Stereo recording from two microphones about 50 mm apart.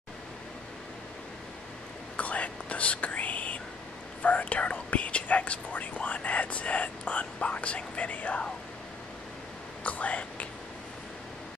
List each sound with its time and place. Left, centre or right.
2.1 s whispering: left
9.8 s whispering: left